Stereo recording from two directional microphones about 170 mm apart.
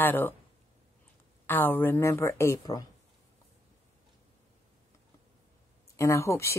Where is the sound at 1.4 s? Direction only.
10° left (ahead or behind).